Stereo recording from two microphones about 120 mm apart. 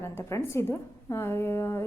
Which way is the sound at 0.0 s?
20° left (ahead or behind).